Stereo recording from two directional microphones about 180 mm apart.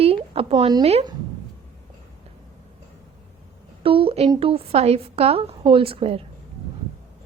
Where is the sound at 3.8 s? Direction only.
30° right (ahead or behind).